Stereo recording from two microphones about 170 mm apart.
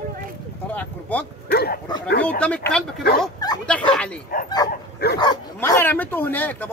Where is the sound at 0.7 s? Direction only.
10° left (ahead or behind).